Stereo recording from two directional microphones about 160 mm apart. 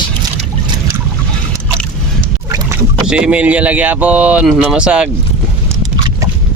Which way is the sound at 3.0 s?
5° right (ahead or behind).